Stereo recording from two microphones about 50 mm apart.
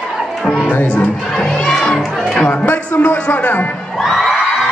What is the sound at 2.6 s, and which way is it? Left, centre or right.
Speech, left.